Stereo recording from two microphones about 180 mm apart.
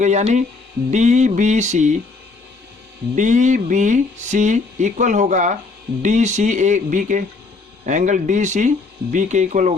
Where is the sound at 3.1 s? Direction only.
40° right (ahead or behind).